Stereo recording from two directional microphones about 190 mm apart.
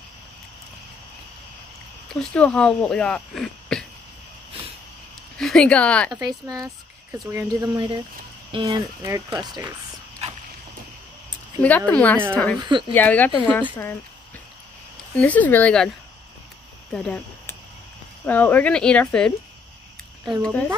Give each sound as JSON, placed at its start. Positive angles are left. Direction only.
{"t": 2.1, "sound": "speech", "side_deg": 5}
{"t": 5.4, "sound": "speech", "side_deg": 0}
{"t": 6.2, "sound": "speech", "side_deg": -20}
{"t": 10.2, "sound": "boat", "side_deg": -35}
{"t": 11.6, "sound": "speech", "side_deg": 5}
{"t": 15.1, "sound": "speech", "side_deg": 10}
{"t": 16.9, "sound": "speech", "side_deg": 5}
{"t": 18.2, "sound": "speech", "side_deg": 10}